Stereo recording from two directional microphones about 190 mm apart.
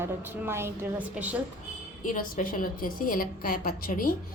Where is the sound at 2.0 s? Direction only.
45° left (ahead or behind).